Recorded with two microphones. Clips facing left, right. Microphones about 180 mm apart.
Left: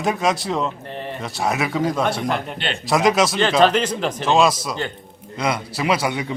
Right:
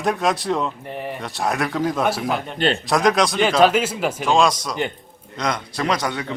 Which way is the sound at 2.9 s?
Centre (ahead or behind).